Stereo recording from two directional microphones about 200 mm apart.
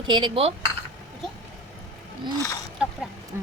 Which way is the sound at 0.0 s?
25° right (ahead or behind).